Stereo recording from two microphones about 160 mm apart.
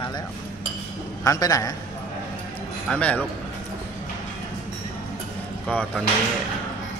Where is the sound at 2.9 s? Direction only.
10° left (ahead or behind).